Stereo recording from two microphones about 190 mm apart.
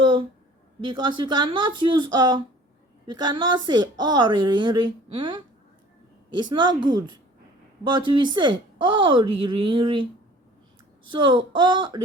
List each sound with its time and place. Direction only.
0.0 s a sound: 25° right (ahead or behind)
0.8 s a woman's voice: 25° right (ahead or behind)
11.1 s a woman's voice: 25° right (ahead or behind)